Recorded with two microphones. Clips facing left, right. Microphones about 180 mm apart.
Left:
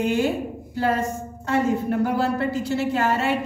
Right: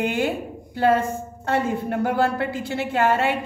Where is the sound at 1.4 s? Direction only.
55° right (ahead or behind).